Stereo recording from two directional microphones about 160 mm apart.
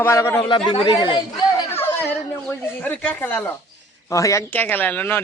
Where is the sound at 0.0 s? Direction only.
15° left (ahead or behind).